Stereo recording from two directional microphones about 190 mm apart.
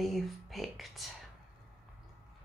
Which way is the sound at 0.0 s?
Centre (ahead or behind).